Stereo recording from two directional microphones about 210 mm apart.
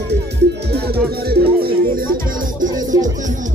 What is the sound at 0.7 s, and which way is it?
Speech, 50° right (ahead or behind).